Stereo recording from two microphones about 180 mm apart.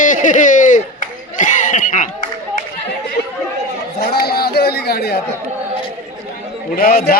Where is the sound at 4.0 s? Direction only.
60° left (ahead or behind).